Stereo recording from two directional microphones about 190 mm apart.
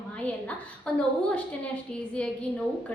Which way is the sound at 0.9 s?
5° left (ahead or behind).